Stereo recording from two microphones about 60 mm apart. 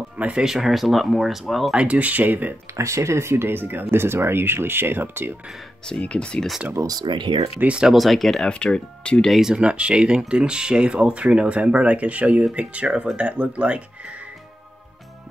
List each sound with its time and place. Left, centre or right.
0.2 s speech: centre
0.5 s speech: centre
1.7 s speech: right
2.8 s speech: right
5.9 s speech: centre
6.8 s speech: right
7.6 s speech: centre
7.9 s speech: centre
8.5 s speech: centre
9.3 s speech: centre
9.6 s speech: centre